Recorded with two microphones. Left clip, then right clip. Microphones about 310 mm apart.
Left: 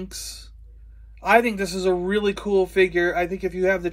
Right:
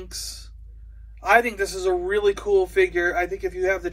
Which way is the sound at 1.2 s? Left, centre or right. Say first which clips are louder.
Even; centre.